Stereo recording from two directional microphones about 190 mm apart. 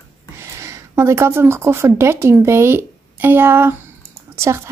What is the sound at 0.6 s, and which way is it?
A woman's voice, 15° right (ahead or behind).